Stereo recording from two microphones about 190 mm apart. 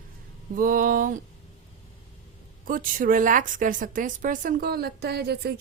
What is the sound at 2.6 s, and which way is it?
A woman's voice, 45° right (ahead or behind).